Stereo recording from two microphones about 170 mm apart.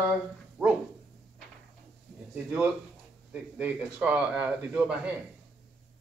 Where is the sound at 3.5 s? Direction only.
10° right (ahead or behind).